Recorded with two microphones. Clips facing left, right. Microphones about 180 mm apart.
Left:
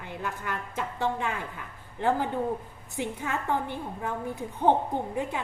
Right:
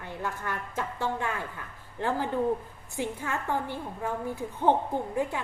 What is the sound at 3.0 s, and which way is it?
A woman's voice, 20° left (ahead or behind).